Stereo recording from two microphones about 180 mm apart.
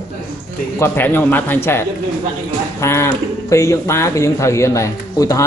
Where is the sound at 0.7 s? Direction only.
10° left (ahead or behind).